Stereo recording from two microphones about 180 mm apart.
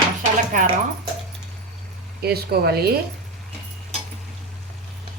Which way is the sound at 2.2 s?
60° right (ahead or behind).